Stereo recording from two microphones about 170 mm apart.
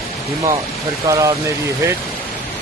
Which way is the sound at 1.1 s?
20° right (ahead or behind).